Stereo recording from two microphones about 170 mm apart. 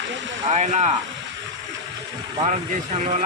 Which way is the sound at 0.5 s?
40° right (ahead or behind).